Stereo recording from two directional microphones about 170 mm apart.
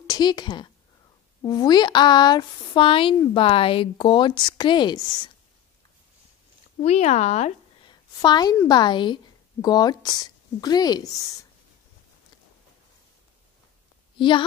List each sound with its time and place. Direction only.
0.0 s a woman's voice: 25° left (ahead or behind)
6.8 s speech: 40° left (ahead or behind)
7.9 s a woman's voice: 25° left (ahead or behind)
14.1 s a woman's voice: 30° left (ahead or behind)